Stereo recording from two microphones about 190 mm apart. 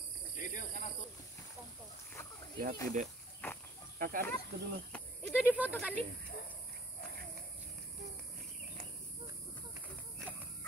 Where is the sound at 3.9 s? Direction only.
45° right (ahead or behind).